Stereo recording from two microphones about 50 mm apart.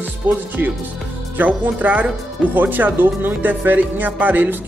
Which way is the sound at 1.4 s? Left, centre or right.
Right.